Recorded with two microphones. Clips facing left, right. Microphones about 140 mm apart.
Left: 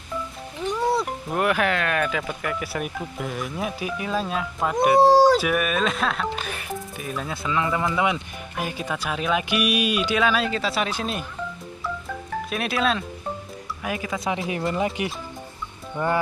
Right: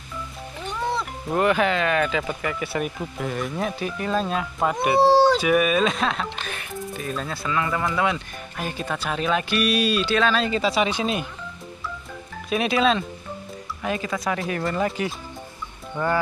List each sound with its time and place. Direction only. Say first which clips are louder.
0.9 s speech: even; 5° left (ahead or behind)
5.0 s speech: right 1 dB; 10° left (ahead or behind)
12.4 s speech: right 4 dB; centre (ahead or behind)
14.7 s speech: even; 20° left (ahead or behind)